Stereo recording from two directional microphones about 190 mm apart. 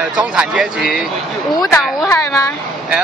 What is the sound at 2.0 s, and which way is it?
Speech, 15° left (ahead or behind).